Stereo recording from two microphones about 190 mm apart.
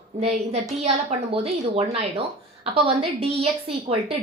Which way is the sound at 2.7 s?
30° right (ahead or behind).